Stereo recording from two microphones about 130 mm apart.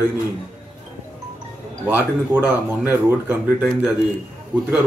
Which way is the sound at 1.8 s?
15° right (ahead or behind).